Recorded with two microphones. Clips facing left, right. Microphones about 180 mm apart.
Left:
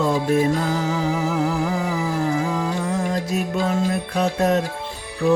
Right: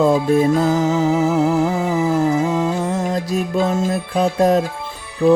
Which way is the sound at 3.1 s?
35° right (ahead or behind).